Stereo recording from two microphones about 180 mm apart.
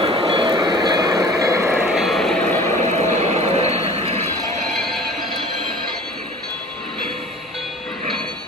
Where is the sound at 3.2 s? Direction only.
40° right (ahead or behind).